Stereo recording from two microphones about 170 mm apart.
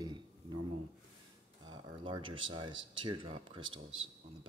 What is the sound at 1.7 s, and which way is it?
Speech, 30° right (ahead or behind).